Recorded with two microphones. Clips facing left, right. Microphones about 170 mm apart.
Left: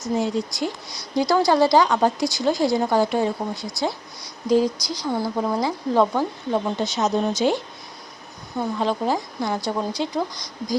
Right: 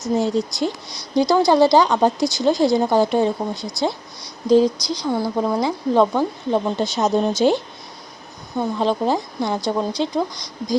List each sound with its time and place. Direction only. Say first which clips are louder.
0.0 s speech: right 3 dB; 25° right (ahead or behind)
6.7 s speech: right 3 dB; 30° right (ahead or behind)
9.6 s speech: right 3 dB; 5° left (ahead or behind)